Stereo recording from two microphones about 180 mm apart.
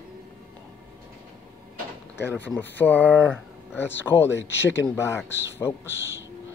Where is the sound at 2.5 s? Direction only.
10° left (ahead or behind).